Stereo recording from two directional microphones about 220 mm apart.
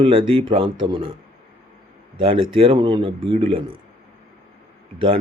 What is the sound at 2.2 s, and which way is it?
Speech, 25° right (ahead or behind).